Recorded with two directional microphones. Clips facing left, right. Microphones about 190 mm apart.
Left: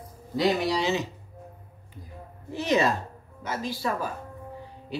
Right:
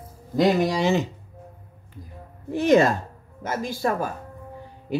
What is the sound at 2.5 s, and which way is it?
Speech, 50° right (ahead or behind).